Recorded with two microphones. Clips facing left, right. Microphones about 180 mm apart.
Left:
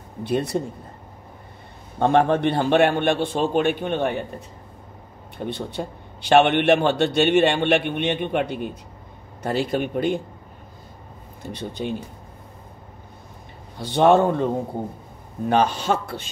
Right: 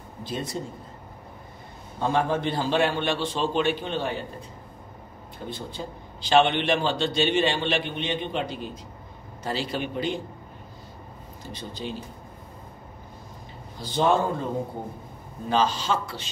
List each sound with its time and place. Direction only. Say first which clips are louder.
0.2 s a man's voice: left 9 dB; 65° left (ahead or behind)
2.0 s a man's voice: left 6 dB; 65° left (ahead or behind)
5.4 s a man's voice: left 6 dB; 65° left (ahead or behind)
11.4 s a man's voice: left 6 dB; 60° left (ahead or behind)
13.7 s a man's voice: left 6 dB; 65° left (ahead or behind)
15.4 s a man's voice: left 4 dB; 60° left (ahead or behind)